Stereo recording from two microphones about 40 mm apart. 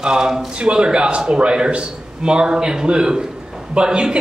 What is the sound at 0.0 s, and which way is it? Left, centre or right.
A man's voice, centre.